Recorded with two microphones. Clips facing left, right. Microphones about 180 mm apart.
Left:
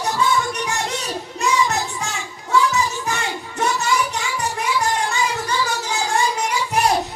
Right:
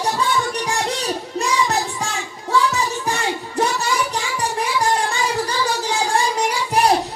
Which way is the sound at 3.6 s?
35° right (ahead or behind).